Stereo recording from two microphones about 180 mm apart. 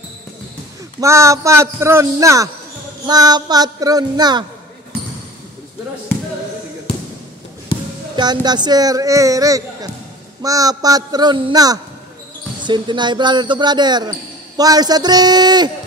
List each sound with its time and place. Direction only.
1.0 s a man's voice: 15° right (ahead or behind)
8.2 s speech: 25° right (ahead or behind)